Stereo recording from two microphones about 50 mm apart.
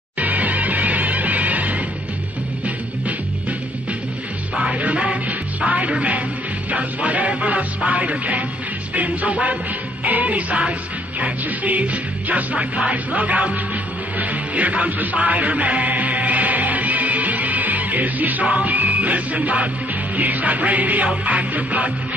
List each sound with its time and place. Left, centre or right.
0.2 s music: right
4.6 s music: right